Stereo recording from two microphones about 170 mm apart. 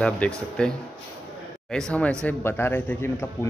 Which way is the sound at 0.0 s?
5° left (ahead or behind).